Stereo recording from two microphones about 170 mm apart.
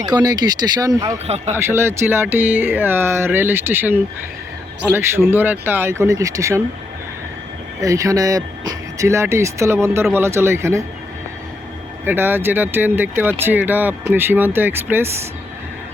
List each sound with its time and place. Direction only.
0.0 s speech: 25° right (ahead or behind)
7.8 s speech: 20° right (ahead or behind)
12.0 s speech: 10° right (ahead or behind)